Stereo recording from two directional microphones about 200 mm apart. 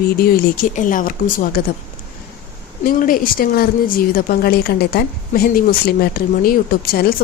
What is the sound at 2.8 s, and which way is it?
A woman's voice, 45° left (ahead or behind).